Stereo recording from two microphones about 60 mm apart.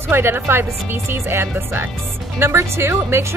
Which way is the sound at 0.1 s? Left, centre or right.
Right.